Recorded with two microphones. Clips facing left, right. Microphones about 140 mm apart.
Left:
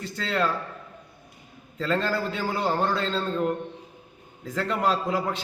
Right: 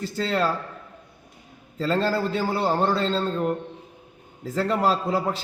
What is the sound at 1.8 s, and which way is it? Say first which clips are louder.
A man's voice: right 3 dB; 35° right (ahead or behind).